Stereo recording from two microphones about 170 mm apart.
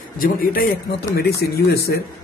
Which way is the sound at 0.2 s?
60° left (ahead or behind).